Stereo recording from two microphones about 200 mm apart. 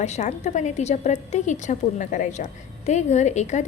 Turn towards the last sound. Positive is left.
turn(degrees=35)  # may be behind; listen again after turning